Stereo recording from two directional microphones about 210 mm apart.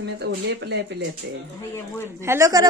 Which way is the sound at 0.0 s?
55° right (ahead or behind).